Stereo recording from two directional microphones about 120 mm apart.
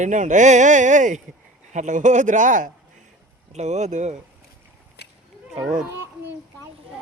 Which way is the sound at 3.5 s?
70° right (ahead or behind).